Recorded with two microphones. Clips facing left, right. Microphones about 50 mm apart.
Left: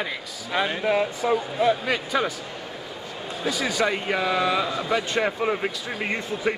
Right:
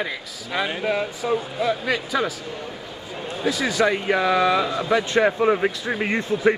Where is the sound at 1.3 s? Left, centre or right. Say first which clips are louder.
Left 1 dB; centre.